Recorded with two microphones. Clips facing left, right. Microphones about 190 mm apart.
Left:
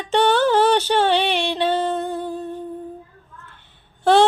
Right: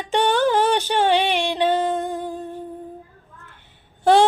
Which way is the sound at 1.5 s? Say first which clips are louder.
Right 1 dB; 10° right (ahead or behind).